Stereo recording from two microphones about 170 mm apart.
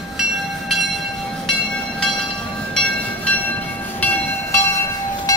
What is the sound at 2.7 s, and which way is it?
Train, 5° left (ahead or behind).